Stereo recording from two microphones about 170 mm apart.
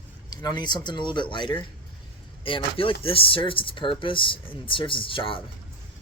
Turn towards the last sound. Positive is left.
turn(degrees=30)  # may be behind; listen again after turning